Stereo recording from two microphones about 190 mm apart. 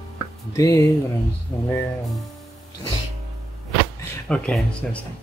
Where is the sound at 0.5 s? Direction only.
15° left (ahead or behind).